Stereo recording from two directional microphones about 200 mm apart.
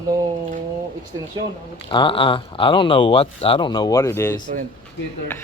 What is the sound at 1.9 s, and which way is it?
Speech, 25° left (ahead or behind).